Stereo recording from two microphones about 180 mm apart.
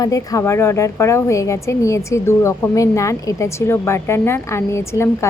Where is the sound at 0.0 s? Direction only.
20° left (ahead or behind).